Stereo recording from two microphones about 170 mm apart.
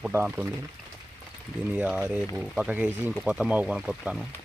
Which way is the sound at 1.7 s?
10° right (ahead or behind).